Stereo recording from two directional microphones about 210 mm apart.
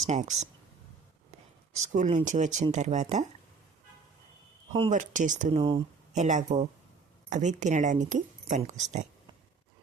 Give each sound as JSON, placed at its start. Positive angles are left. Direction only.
{"t": 0.1, "sound": "speech", "side_deg": -35}
{"t": 1.7, "sound": "speech", "side_deg": -35}
{"t": 4.9, "sound": "speech", "side_deg": -35}
{"t": 6.2, "sound": "speech", "side_deg": -35}